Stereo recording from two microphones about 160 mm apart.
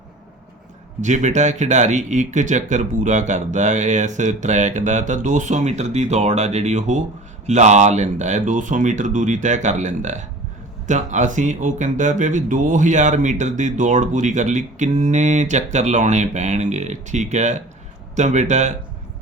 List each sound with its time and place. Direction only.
1.0 s speech: 45° right (ahead or behind)